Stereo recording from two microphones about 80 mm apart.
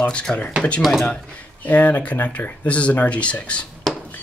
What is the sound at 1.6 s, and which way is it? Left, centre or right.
Speech, centre.